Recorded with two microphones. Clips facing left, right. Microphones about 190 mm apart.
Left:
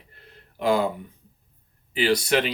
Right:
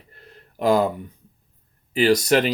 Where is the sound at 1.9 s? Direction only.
45° right (ahead or behind).